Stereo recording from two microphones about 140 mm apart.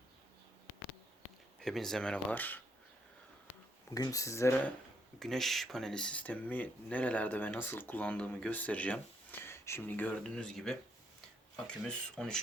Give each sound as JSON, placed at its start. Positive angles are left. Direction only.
{"t": 1.5, "sound": "speech", "side_deg": 0}
{"t": 3.9, "sound": "speech", "side_deg": 25}
{"t": 5.2, "sound": "speech", "side_deg": 0}